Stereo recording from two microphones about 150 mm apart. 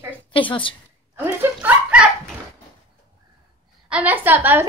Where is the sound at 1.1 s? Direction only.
10° right (ahead or behind).